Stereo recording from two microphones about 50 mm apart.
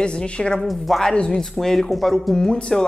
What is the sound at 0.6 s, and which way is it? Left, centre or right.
Speech, centre.